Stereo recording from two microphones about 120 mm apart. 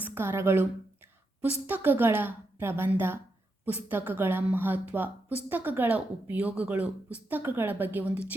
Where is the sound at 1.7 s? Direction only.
15° right (ahead or behind).